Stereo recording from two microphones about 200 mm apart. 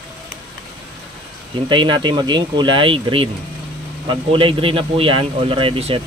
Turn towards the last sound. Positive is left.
turn(degrees=-30)  # may be behind; listen again after turning